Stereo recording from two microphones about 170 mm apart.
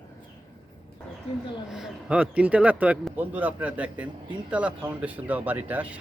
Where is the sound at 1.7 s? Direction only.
5° right (ahead or behind).